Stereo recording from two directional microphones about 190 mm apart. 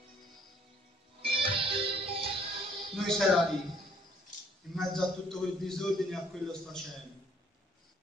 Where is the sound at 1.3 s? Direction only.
30° right (ahead or behind).